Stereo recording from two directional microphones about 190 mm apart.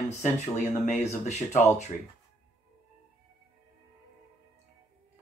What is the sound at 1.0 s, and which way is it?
Speech, 40° left (ahead or behind).